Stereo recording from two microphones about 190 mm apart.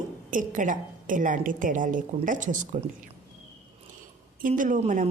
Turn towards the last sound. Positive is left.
turn(degrees=-40)  # may be behind; listen again after turning